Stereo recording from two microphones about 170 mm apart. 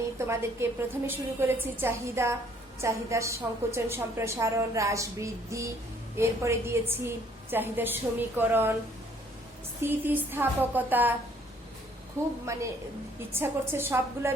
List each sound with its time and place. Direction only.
0.3 s a woman's voice: 15° right (ahead or behind)
9.8 s a woman's voice: 10° right (ahead or behind)
12.5 s a woman's voice: 15° right (ahead or behind)